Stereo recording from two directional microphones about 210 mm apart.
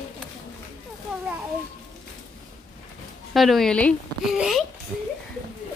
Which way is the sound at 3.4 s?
Centre (ahead or behind).